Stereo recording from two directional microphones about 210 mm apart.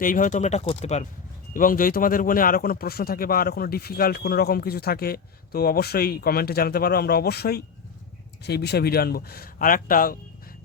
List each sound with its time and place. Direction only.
0.0 s speech: 40° left (ahead or behind)
1.5 s speech: 40° left (ahead or behind)